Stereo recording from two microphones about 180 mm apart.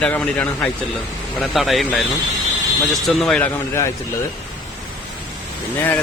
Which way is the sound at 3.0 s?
Centre (ahead or behind).